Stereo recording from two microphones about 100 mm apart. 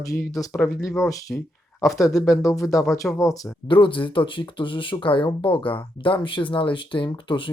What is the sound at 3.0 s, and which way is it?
Speech, 10° left (ahead or behind).